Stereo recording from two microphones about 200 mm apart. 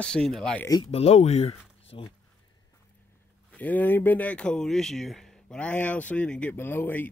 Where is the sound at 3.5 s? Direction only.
10° left (ahead or behind).